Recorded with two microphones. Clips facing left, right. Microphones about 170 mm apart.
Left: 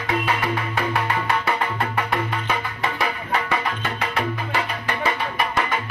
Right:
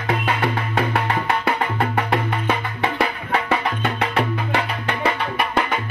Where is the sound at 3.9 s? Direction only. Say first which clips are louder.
Right 3 dB; 65° right (ahead or behind).